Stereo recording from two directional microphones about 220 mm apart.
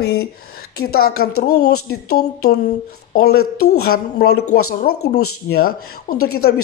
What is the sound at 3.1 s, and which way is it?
Speech, 45° left (ahead or behind).